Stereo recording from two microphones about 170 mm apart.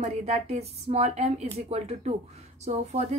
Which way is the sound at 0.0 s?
40° right (ahead or behind).